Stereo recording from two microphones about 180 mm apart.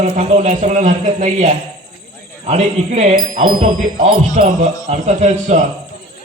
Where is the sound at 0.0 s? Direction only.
40° right (ahead or behind).